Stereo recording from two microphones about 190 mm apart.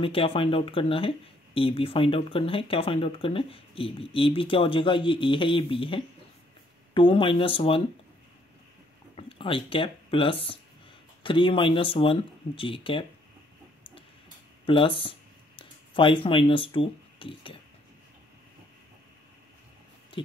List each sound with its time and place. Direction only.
0.0 s speech: 30° left (ahead or behind)
9.1 s speech: 25° left (ahead or behind)
14.7 s speech: 25° left (ahead or behind)